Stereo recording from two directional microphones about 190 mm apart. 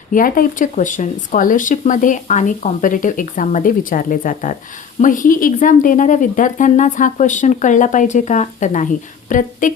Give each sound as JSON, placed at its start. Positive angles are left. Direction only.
{"t": 0.1, "sound": "speech", "side_deg": 45}